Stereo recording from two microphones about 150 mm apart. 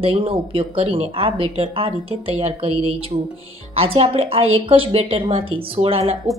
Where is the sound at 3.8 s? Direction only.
40° right (ahead or behind).